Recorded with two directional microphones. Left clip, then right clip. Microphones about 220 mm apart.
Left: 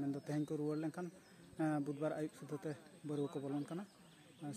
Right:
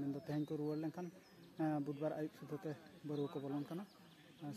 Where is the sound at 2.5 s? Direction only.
25° left (ahead or behind).